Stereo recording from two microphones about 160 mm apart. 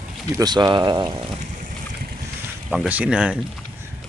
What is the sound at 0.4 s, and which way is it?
Speech, 25° right (ahead or behind).